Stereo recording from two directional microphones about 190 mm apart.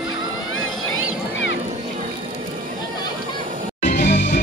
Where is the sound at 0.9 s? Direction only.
70° left (ahead or behind).